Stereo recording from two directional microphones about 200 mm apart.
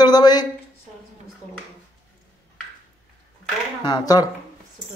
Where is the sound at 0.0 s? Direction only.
20° left (ahead or behind).